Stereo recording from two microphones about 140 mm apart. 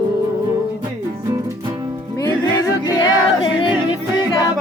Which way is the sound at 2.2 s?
30° left (ahead or behind).